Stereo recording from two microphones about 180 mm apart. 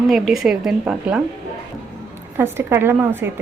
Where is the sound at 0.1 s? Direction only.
Centre (ahead or behind).